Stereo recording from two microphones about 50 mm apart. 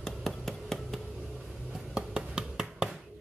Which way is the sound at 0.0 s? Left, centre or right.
Centre.